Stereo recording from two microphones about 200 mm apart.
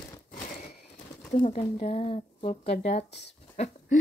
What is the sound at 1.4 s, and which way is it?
Speech, 30° left (ahead or behind).